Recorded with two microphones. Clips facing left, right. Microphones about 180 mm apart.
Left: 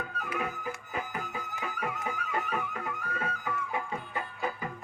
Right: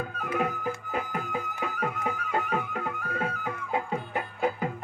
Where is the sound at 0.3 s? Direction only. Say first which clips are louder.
Right 7 dB; 50° right (ahead or behind).